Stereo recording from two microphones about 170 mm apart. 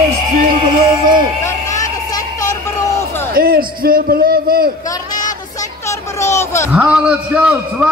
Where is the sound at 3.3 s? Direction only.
60° right (ahead or behind).